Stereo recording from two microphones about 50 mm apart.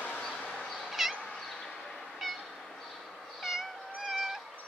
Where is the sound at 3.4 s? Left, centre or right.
Centre.